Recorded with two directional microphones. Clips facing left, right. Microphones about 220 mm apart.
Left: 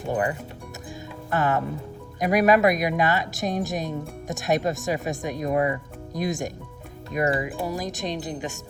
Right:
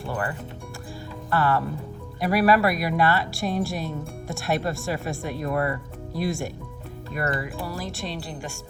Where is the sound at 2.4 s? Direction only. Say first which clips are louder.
Left 1 dB; 20° left (ahead or behind).